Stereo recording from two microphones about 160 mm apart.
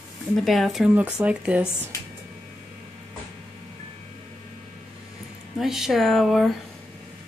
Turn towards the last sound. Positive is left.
turn(degrees=0)  # may be behind; listen again after turning